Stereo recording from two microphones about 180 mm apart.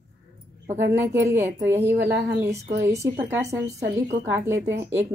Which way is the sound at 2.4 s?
50° right (ahead or behind).